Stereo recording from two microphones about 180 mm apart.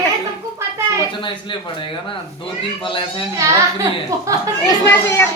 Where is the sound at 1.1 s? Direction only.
25° left (ahead or behind).